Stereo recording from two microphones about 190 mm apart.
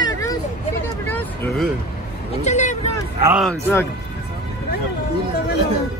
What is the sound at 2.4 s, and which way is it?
Speech, 40° left (ahead or behind).